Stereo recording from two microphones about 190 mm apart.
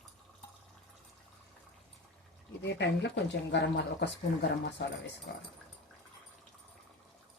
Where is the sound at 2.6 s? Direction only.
65° left (ahead or behind).